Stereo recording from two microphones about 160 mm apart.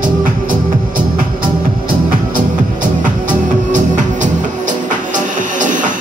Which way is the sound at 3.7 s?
50° right (ahead or behind).